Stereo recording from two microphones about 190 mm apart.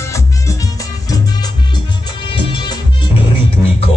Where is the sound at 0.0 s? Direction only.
15° left (ahead or behind).